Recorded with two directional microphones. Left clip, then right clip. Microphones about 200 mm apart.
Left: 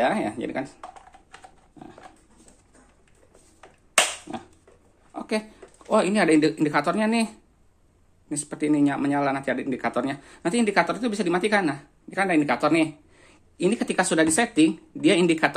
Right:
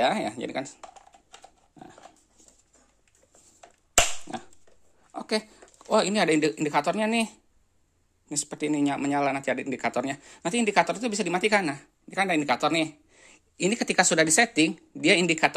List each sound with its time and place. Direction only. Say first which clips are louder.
0.0 s speech: left 1 dB; 35° right (ahead or behind)
4.3 s a sound: left 1 dB; 40° right (ahead or behind)
5.9 s speech: left 2 dB; 35° right (ahead or behind)